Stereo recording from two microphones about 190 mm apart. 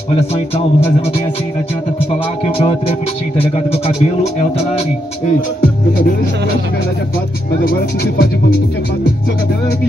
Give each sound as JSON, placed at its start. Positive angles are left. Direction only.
{"t": 2.6, "sound": "speech", "side_deg": 30}
{"t": 7.6, "sound": "speech", "side_deg": 55}